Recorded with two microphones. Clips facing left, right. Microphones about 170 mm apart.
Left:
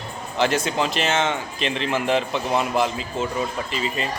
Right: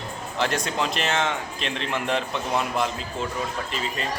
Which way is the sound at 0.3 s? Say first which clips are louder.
Left 4 dB; centre (ahead or behind).